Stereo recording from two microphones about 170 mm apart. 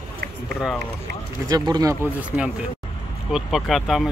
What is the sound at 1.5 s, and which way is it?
Speech, 25° right (ahead or behind).